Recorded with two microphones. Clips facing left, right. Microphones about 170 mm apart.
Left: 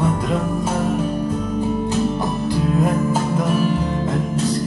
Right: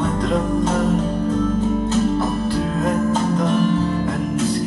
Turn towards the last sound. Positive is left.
turn(degrees=10)  # may be behind; listen again after turning